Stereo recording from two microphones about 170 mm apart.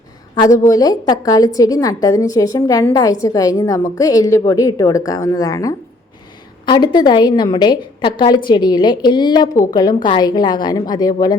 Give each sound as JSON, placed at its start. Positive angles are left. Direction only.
{"t": 0.6, "sound": "a woman's voice", "side_deg": 20}
{"t": 6.9, "sound": "a woman's voice", "side_deg": 25}